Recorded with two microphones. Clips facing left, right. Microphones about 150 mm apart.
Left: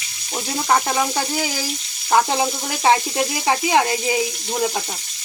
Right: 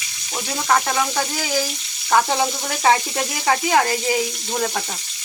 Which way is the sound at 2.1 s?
15° left (ahead or behind).